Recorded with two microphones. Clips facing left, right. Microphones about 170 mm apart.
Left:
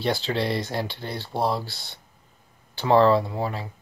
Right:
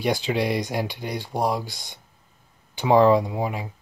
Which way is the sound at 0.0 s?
15° right (ahead or behind).